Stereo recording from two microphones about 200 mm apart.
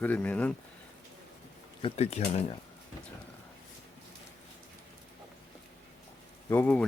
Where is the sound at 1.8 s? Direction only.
30° left (ahead or behind).